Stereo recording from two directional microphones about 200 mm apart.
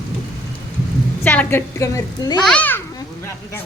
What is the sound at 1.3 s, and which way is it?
Speech, 10° left (ahead or behind).